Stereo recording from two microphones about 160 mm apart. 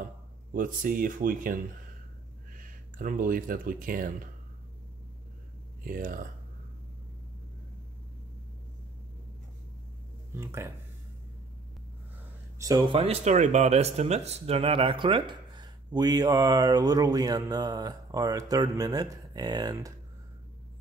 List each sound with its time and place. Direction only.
0.5 s speech: 60° right (ahead or behind)
5.9 s speech: 60° right (ahead or behind)
10.3 s speech: 15° right (ahead or behind)
12.5 s speech: 20° right (ahead or behind)
12.9 s speech: 40° right (ahead or behind); by 19.9 s 25° right (ahead or behind)